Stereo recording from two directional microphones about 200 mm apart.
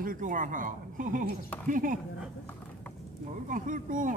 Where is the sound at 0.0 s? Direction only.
45° right (ahead or behind).